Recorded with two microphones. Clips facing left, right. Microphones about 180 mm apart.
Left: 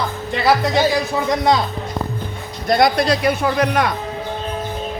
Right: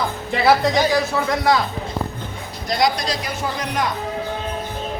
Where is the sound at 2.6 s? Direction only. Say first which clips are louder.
Left 5 dB; 55° left (ahead or behind).